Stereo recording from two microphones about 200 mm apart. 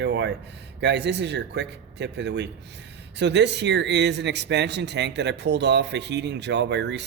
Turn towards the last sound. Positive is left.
turn(degrees=-60)  # may be behind; listen again after turning